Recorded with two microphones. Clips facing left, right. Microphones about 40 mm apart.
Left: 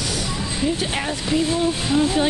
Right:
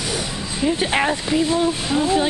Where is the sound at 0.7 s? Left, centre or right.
Right.